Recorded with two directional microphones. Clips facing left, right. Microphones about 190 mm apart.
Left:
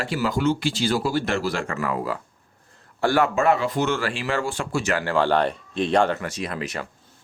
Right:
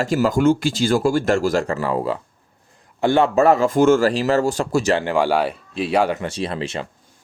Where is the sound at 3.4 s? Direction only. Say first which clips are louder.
Right 6 dB; 40° right (ahead or behind).